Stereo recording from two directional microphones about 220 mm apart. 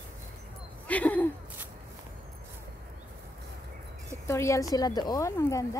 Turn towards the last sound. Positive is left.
turn(degrees=15)  # may be behind; listen again after turning